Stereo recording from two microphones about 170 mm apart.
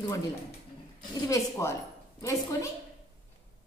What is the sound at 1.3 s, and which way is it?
A woman's voice, 20° left (ahead or behind).